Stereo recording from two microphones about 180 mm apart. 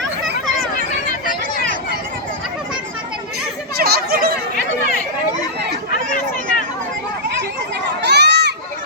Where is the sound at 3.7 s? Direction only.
60° right (ahead or behind).